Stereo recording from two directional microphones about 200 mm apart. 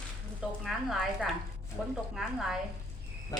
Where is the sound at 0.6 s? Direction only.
Centre (ahead or behind).